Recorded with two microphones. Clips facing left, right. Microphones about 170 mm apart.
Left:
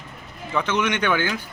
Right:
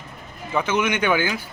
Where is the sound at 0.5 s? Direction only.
10° right (ahead or behind).